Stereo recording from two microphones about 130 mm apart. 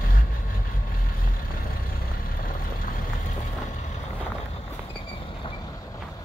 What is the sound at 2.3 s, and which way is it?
Boat, 90° left.